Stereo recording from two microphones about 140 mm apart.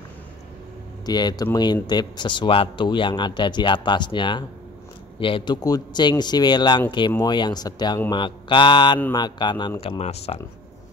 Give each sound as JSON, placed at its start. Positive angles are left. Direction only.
{"t": 1.0, "sound": "speech", "side_deg": 30}